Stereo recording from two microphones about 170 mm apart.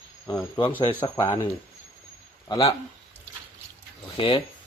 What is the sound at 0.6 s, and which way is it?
Speech, 30° left (ahead or behind).